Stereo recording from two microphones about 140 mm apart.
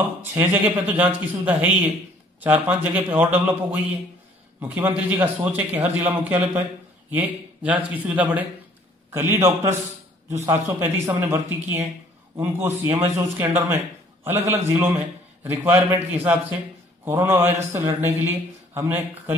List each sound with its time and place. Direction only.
0.2 s a man's voice: 15° right (ahead or behind)
4.6 s a man's voice: 15° right (ahead or behind)